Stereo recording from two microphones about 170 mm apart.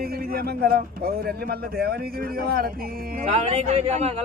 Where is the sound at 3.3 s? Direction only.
40° right (ahead or behind).